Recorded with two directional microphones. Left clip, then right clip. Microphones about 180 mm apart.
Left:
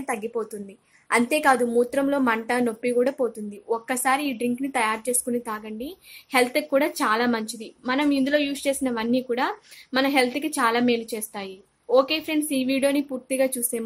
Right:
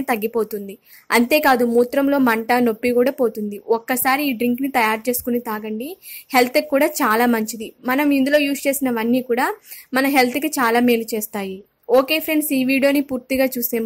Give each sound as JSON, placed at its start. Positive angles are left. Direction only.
{"t": 0.0, "sound": "a woman's voice", "side_deg": -40}